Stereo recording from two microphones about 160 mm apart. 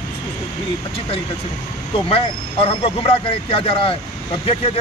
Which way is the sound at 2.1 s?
35° left (ahead or behind).